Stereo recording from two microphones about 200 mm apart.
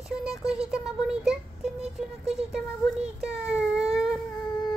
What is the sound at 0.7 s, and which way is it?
A child's voice, 5° right (ahead or behind).